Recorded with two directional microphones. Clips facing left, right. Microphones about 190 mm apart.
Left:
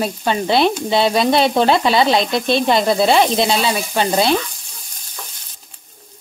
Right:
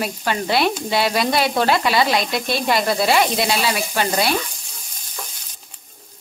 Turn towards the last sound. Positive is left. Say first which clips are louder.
# left 4 dB
turn(degrees=25)  # may be behind; listen again after turning